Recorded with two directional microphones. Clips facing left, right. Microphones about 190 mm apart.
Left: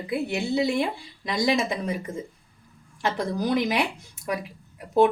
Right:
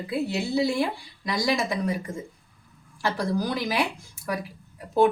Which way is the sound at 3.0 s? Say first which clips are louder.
Even; 20° left (ahead or behind).